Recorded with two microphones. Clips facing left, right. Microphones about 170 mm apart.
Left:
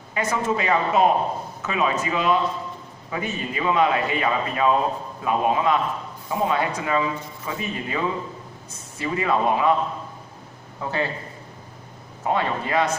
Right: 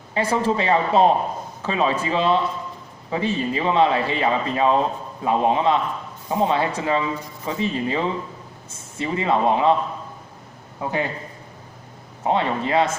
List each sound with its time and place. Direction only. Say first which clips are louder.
0.1 s a man's voice: right 3 dB; 30° right (ahead or behind)
10.8 s a man's voice: right 1 dB; 15° right (ahead or behind)
12.3 s speech: right 2 dB; 25° right (ahead or behind)